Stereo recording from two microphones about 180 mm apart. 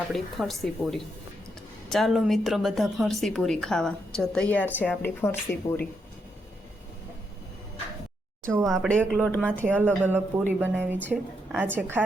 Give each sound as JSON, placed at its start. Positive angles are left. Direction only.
{"t": 0.1, "sound": "a woman's voice", "side_deg": 0}
{"t": 8.6, "sound": "a woman's voice", "side_deg": 0}
{"t": 9.6, "sound": "a woman's voice", "side_deg": -10}